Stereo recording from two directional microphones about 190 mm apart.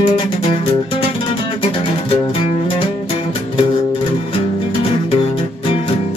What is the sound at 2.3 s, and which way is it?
Music, 30° left (ahead or behind).